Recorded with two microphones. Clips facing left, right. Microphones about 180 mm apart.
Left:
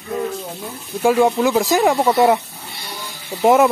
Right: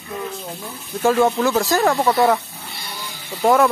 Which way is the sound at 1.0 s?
10° left (ahead or behind).